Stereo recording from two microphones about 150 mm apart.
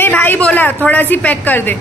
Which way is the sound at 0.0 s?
10° left (ahead or behind).